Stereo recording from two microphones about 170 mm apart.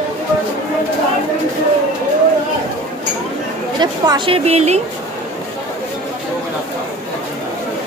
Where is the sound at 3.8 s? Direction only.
25° right (ahead or behind).